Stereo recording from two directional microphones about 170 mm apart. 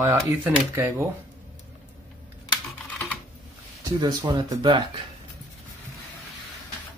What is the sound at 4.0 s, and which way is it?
Speech, 25° right (ahead or behind).